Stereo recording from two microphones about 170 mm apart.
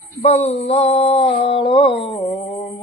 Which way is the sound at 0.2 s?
40° left (ahead or behind).